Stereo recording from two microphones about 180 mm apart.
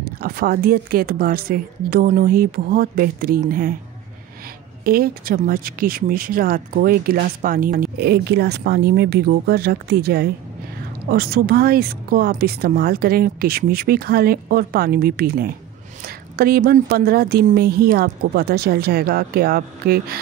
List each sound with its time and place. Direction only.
0.2 s a woman's voice: 55° right (ahead or behind)
4.8 s speech: 55° right (ahead or behind)